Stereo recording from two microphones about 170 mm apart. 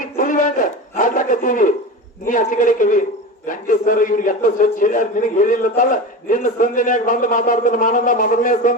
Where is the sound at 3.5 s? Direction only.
50° left (ahead or behind).